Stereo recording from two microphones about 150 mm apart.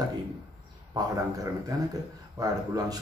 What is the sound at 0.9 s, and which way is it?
A man's voice, 25° right (ahead or behind).